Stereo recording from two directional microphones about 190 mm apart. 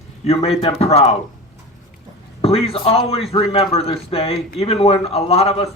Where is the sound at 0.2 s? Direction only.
35° left (ahead or behind).